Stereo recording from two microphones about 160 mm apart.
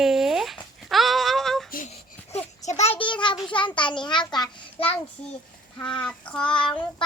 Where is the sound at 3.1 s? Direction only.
30° left (ahead or behind).